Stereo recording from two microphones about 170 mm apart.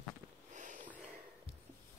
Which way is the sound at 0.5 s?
45° right (ahead or behind).